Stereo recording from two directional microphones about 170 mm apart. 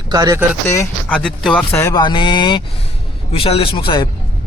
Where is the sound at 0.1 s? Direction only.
20° right (ahead or behind).